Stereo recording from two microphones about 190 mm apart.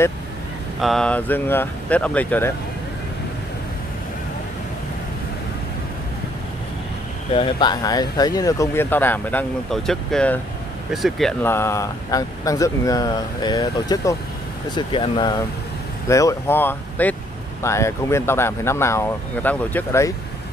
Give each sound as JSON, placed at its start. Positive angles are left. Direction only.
{"t": 0.7, "sound": "speech", "side_deg": 0}
{"t": 7.3, "sound": "speech", "side_deg": 25}
{"t": 11.4, "sound": "speech", "side_deg": 15}